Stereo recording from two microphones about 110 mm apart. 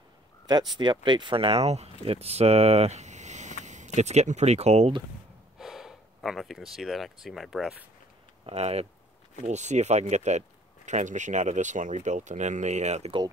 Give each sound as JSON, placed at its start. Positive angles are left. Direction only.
{"t": 0.5, "sound": "speech", "side_deg": -40}
{"t": 5.6, "sound": "speech", "side_deg": -5}
{"t": 8.5, "sound": "speech", "side_deg": -70}
{"t": 9.4, "sound": "speech", "side_deg": -90}